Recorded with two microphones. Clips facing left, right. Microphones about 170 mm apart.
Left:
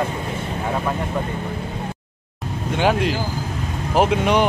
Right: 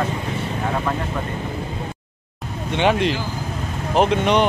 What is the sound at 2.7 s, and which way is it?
Speech, 5° left (ahead or behind).